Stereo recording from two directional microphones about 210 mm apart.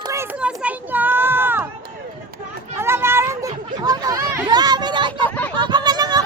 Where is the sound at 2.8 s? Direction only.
10° right (ahead or behind).